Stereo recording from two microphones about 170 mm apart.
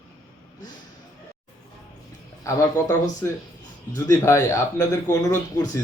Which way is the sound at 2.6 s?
15° left (ahead or behind).